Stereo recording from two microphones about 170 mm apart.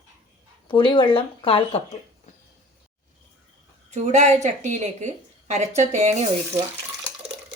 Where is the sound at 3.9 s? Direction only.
40° right (ahead or behind).